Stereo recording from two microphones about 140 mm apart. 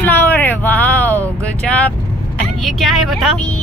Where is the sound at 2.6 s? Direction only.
Centre (ahead or behind).